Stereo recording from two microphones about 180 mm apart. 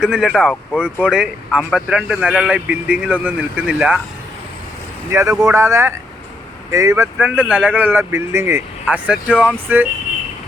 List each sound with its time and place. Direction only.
0.0 s speech: 5° right (ahead or behind)
5.4 s speech: 15° right (ahead or behind)